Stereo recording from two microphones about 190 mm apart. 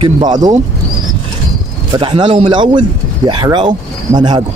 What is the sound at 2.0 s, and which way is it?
Speech, 25° right (ahead or behind).